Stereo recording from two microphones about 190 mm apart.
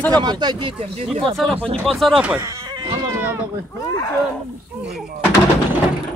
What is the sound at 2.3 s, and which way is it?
Cat, 20° right (ahead or behind).